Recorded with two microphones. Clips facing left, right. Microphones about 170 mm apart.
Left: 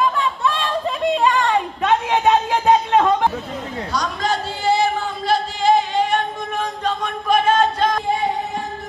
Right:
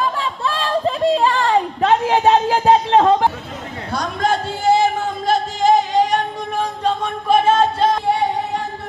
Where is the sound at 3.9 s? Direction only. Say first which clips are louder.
Right 3 dB; 55° right (ahead or behind); by 7.9 s 30° right (ahead or behind).